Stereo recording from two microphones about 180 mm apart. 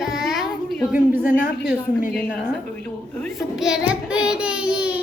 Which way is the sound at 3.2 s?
5° right (ahead or behind).